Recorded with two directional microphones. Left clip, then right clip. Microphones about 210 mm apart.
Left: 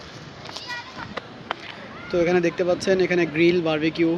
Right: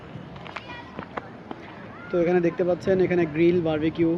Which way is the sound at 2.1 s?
10° right (ahead or behind).